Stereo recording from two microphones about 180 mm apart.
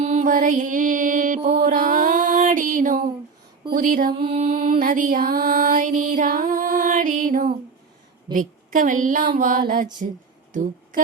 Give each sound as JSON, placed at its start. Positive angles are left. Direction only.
{"t": 0.0, "sound": "mantra", "side_deg": -45}
{"t": 3.8, "sound": "music", "side_deg": -50}
{"t": 10.5, "sound": "speech", "side_deg": -45}